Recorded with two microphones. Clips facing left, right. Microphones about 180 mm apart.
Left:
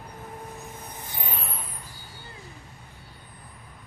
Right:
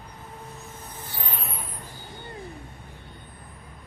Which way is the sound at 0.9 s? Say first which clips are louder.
Right 1 dB; 15° left (ahead or behind).